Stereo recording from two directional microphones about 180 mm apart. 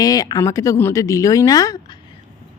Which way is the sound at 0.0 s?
20° left (ahead or behind).